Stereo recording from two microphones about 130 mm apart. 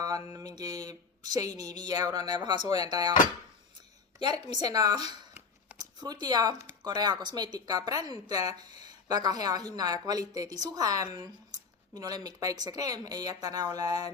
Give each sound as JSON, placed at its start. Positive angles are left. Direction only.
{"t": 0.3, "sound": "speech", "side_deg": -30}
{"t": 4.2, "sound": "speech", "side_deg": -35}